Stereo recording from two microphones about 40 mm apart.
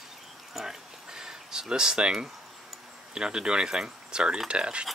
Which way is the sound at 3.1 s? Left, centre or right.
Right.